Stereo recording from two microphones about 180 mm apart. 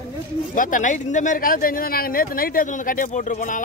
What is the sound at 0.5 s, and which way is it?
Speech, 50° left (ahead or behind).